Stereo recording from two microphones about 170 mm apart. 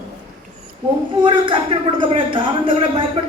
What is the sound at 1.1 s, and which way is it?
A woman's voice, 30° right (ahead or behind).